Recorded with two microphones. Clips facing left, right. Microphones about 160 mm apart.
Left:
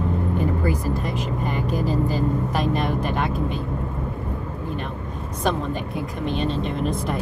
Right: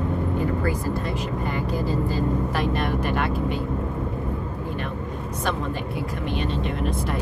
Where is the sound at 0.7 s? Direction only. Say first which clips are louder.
Left 1 dB; 20° left (ahead or behind).